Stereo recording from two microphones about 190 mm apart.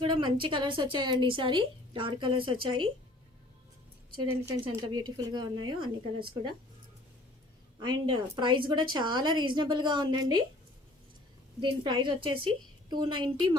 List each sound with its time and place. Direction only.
0.0 s a woman's voice: 25° right (ahead or behind)
4.6 s a woman's voice: 25° right (ahead or behind)
7.8 s a woman's voice: 25° right (ahead or behind)
11.6 s a woman's voice: 25° right (ahead or behind)